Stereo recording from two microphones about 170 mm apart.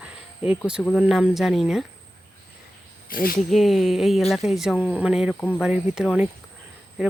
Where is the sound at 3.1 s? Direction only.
60° left (ahead or behind).